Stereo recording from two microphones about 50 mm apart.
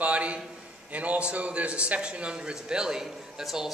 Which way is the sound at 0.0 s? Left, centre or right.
Right.